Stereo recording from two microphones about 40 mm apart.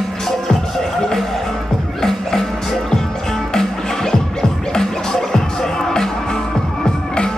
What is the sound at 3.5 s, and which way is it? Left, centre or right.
Music, centre.